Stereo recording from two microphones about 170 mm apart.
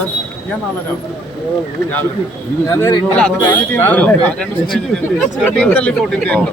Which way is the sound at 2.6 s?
15° left (ahead or behind).